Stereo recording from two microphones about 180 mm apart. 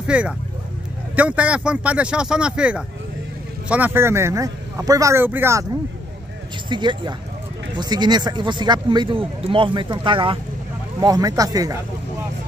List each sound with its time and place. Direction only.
0.0 s a man's voice: 5° right (ahead or behind)
6.7 s a man's voice: 25° right (ahead or behind)